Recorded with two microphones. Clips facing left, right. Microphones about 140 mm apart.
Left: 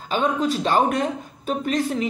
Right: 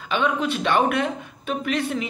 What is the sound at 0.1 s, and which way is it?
Speech, 40° left (ahead or behind).